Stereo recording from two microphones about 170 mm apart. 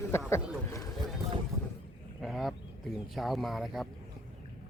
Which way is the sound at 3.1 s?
Centre (ahead or behind).